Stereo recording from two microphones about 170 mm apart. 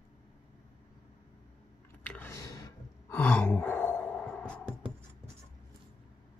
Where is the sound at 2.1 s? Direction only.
15° left (ahead or behind).